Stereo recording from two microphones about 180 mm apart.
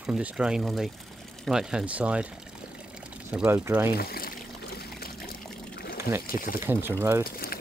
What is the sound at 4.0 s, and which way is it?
Speech, 55° left (ahead or behind).